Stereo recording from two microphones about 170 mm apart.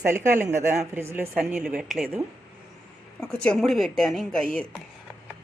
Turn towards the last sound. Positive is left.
turn(degrees=5)  # may be behind; listen again after turning